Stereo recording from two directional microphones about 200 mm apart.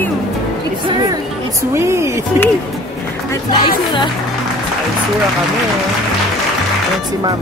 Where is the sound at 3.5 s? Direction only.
25° left (ahead or behind).